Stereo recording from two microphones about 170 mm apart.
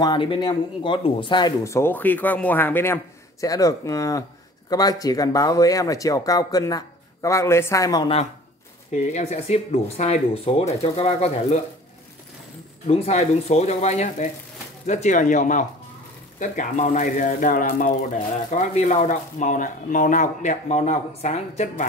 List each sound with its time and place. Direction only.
0.0 s speech: 30° left (ahead or behind)
8.9 s speech: 40° left (ahead or behind)
12.8 s speech: 35° left (ahead or behind)